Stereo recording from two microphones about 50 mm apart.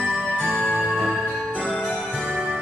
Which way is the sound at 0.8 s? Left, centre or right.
Centre.